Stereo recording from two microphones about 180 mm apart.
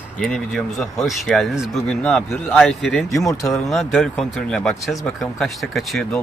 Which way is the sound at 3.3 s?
20° left (ahead or behind).